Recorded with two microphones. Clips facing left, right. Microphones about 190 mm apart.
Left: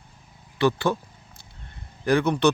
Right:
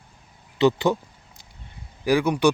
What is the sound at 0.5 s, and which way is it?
Speech, 20° right (ahead or behind).